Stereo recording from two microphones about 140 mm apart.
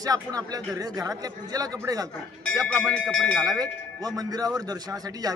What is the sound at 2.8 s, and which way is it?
Speech, centre (ahead or behind).